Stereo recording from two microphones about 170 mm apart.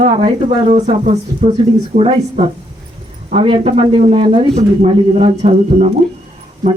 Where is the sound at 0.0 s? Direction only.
35° right (ahead or behind).